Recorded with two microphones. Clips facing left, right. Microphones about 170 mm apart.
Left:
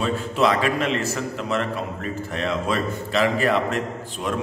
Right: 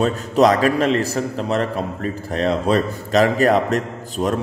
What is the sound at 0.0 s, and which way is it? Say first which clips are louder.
A man's voice: right 6 dB; 40° right (ahead or behind).